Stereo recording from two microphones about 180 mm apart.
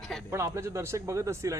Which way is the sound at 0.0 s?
Centre (ahead or behind).